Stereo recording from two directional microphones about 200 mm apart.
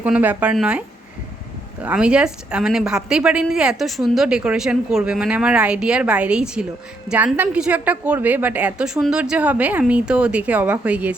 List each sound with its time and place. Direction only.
0.0 s a woman's voice: 10° right (ahead or behind)